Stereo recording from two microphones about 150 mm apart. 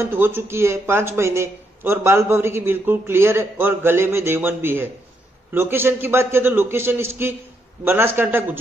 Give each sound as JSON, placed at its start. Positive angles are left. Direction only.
{"t": 0.0, "sound": "a man's voice", "side_deg": -15}